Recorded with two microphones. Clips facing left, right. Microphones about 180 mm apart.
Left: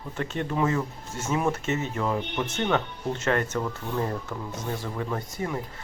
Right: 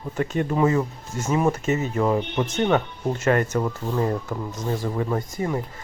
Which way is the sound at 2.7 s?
10° right (ahead or behind).